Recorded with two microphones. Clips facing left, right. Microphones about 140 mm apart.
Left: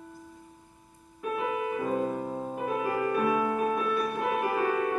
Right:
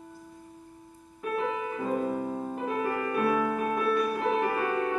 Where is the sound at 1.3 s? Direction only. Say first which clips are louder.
Left 1 dB; 15° left (ahead or behind).